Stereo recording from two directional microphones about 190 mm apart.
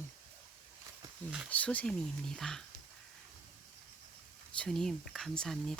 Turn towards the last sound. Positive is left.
turn(degrees=5)  # may be behind; listen again after turning